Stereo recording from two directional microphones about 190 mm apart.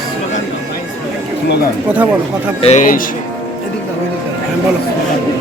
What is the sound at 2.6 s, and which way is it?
Speech, 40° left (ahead or behind).